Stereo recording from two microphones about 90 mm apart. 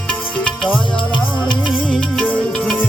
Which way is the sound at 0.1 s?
10° left (ahead or behind).